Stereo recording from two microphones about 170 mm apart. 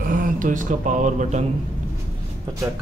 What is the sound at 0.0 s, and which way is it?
Speech, 55° right (ahead or behind).